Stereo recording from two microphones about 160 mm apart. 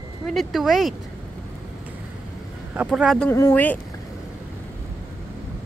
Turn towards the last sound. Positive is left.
turn(degrees=15)  # may be behind; listen again after turning